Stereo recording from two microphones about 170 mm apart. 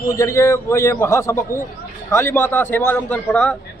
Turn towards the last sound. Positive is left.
turn(degrees=10)  # may be behind; listen again after turning